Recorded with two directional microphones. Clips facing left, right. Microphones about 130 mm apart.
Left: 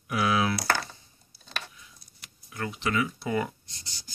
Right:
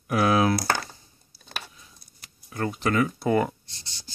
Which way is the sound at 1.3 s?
35° right (ahead or behind).